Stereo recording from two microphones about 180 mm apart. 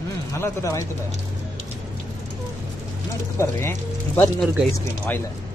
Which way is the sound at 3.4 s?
15° left (ahead or behind).